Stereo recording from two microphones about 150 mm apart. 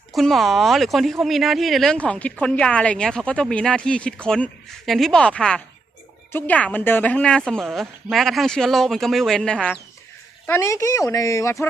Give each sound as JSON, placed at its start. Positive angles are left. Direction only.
{"t": 0.1, "sound": "a woman's voice", "side_deg": 0}
{"t": 10.4, "sound": "speech", "side_deg": 15}